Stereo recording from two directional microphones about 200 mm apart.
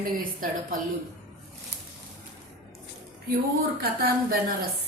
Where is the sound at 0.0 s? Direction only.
45° right (ahead or behind).